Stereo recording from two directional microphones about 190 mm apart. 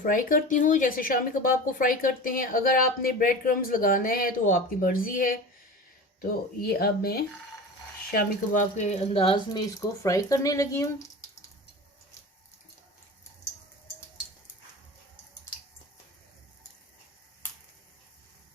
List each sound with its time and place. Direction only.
0.0 s speech: 45° left (ahead or behind)
6.6 s speech: 55° left (ahead or behind)
8.1 s speech: 40° left (ahead or behind); by 11.1 s 15° left (ahead or behind)